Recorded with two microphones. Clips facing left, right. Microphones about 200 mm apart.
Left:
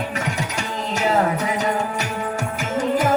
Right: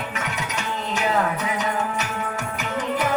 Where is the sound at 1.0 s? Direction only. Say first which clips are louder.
Left 4 dB; 30° left (ahead or behind).